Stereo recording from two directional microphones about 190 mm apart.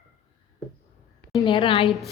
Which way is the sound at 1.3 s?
25° left (ahead or behind).